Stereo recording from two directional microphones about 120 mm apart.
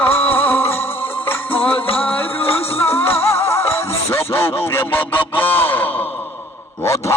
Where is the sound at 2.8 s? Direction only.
20° left (ahead or behind).